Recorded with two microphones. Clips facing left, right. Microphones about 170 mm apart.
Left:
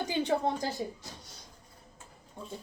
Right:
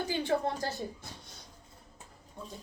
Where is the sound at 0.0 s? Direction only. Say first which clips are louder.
Left 1 dB; 20° left (ahead or behind).